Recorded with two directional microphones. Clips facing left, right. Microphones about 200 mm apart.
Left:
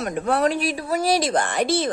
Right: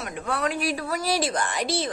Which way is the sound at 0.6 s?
25° left (ahead or behind).